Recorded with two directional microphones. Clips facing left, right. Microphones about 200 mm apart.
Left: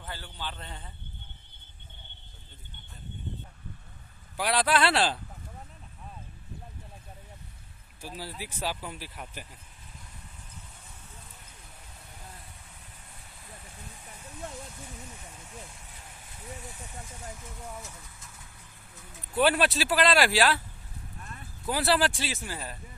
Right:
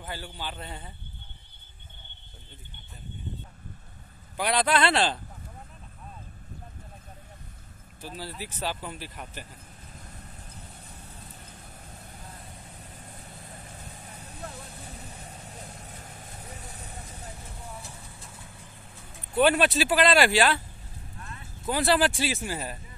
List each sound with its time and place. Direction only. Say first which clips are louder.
0.0 s speech: right 3 dB; 10° right (ahead or behind)
4.4 s speech: right 1 dB; 5° left (ahead or behind)
8.0 s speech: right 1 dB; 10° left (ahead or behind)
10.0 s vehicle: right 4 dB; 35° right (ahead or behind)
13.7 s vehicle: right 3 dB; 35° right (ahead or behind)
19.4 s speech: right 3 dB; centre (ahead or behind)
21.6 s speech: right 2 dB; 5° left (ahead or behind); by 22.8 s 15° right (ahead or behind)